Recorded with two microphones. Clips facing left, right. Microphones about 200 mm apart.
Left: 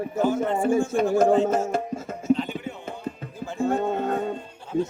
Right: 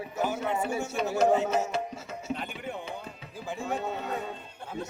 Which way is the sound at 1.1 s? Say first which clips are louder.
Left 4 dB; 55° left (ahead or behind).